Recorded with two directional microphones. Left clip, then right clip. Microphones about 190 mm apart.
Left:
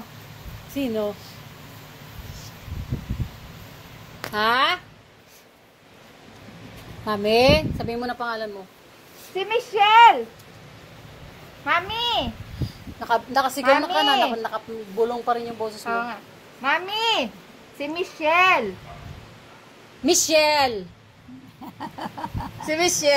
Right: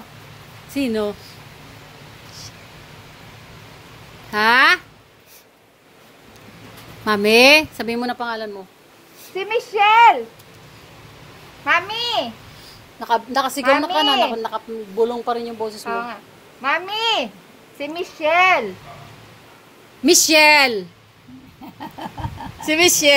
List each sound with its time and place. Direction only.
0.7 s a woman's voice: 30° right (ahead or behind)
4.3 s a woman's voice: 35° right (ahead or behind)
7.1 s a woman's voice: 40° right (ahead or behind)
9.3 s a woman's voice: 25° right (ahead or behind)
11.6 s a woman's voice: 25° right (ahead or behind)
20.1 s a woman's voice: 40° right (ahead or behind)
21.7 s chicken: 5° right (ahead or behind)
22.7 s a woman's voice: 40° right (ahead or behind)